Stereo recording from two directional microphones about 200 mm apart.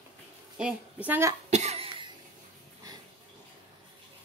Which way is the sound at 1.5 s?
30° right (ahead or behind).